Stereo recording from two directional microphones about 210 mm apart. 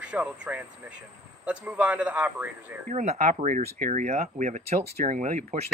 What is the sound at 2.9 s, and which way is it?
Speech, 35° right (ahead or behind).